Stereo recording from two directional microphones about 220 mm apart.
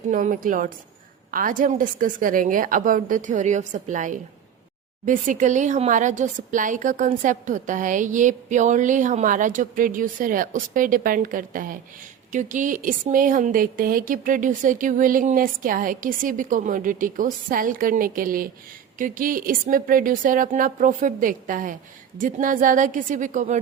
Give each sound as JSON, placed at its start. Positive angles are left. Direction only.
{"t": 0.1, "sound": "speech", "side_deg": -35}